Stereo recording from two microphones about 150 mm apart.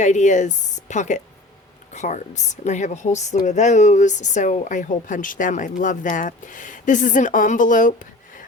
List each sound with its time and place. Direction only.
0.0 s a woman's voice: 55° left (ahead or behind)